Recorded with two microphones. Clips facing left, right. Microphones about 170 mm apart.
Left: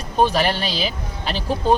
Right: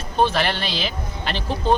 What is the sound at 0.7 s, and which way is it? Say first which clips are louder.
Speech: left 2 dB; 40° left (ahead or behind).